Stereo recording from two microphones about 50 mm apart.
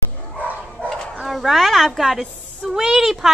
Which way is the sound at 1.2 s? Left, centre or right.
Centre.